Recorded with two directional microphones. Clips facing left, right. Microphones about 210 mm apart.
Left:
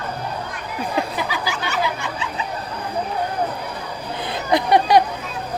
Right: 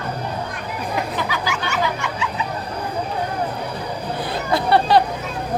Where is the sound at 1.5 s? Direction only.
35° left (ahead or behind).